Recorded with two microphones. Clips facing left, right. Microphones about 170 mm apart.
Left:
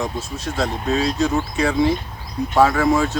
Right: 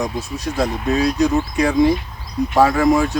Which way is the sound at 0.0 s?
15° right (ahead or behind).